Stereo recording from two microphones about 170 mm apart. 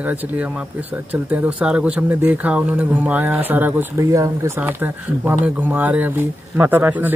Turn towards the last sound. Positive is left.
turn(degrees=-10)  # may be behind; listen again after turning